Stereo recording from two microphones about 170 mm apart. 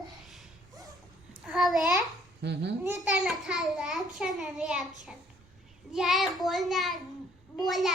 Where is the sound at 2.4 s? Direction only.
80° right.